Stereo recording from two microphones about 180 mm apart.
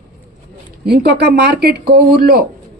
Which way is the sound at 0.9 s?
60° right (ahead or behind).